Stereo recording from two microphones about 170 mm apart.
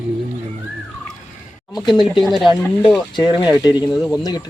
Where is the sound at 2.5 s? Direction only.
25° left (ahead or behind).